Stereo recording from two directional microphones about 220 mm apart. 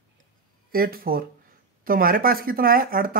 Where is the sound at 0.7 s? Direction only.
40° right (ahead or behind).